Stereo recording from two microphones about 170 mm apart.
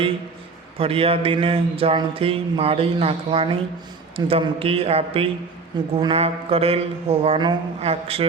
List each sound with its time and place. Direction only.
0.8 s mantra: 35° right (ahead or behind)